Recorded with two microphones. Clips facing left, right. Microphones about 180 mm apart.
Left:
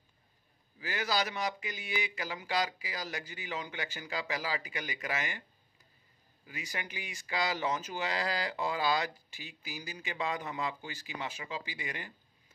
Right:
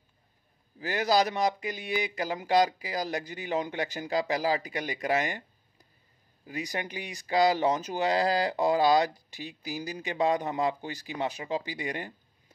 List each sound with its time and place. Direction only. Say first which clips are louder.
0.7 s speech: right 8 dB; 35° right (ahead or behind)